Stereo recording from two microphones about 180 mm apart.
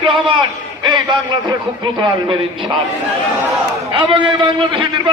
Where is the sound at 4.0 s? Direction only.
25° right (ahead or behind).